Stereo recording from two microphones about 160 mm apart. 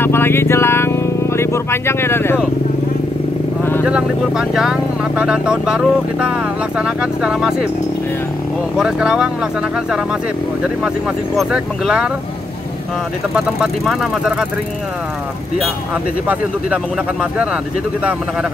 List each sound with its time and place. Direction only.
0.0 s speech: 15° left (ahead or behind)
3.8 s speech: 5° right (ahead or behind)
8.7 s speech: 5° right (ahead or behind)
11.3 s speech: 5° right (ahead or behind)
13.3 s speech: 5° right (ahead or behind)
16.3 s speech: 5° right (ahead or behind)